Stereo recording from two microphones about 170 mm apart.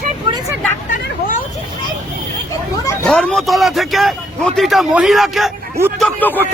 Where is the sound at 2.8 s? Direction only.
5° left (ahead or behind).